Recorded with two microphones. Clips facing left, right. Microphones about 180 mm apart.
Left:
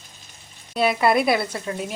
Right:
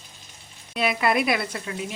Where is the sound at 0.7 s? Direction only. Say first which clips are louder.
Left 4 dB; 35° left (ahead or behind).